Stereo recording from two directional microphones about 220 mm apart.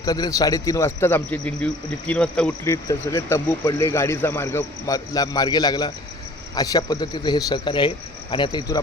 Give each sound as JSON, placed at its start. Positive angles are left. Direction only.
{"t": 0.0, "sound": "a man's voice", "side_deg": 15}